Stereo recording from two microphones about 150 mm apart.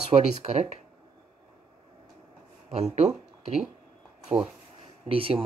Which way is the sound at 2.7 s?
45° right (ahead or behind).